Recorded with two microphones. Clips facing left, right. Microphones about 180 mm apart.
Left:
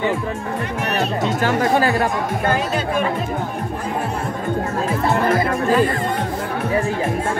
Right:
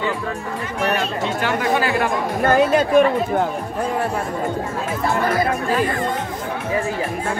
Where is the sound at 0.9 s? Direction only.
40° left (ahead or behind).